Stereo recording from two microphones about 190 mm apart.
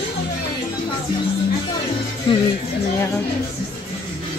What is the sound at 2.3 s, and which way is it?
Speech, 25° left (ahead or behind).